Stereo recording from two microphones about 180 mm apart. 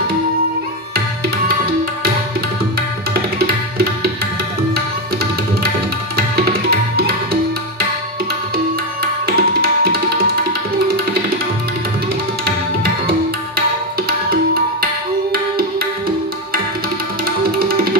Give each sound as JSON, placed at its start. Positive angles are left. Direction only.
{"t": 3.3, "sound": "tabla", "side_deg": -60}
{"t": 9.2, "sound": "tabla", "side_deg": -60}
{"t": 14.0, "sound": "music", "side_deg": -55}